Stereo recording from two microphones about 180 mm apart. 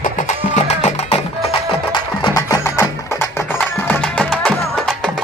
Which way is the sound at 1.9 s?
25° left (ahead or behind).